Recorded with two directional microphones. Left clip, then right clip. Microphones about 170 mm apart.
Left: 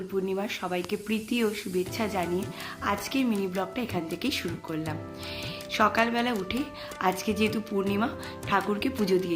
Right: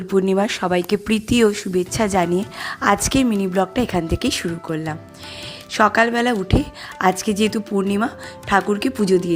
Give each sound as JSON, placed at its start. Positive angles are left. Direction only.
{"t": 0.1, "sound": "speech", "side_deg": -65}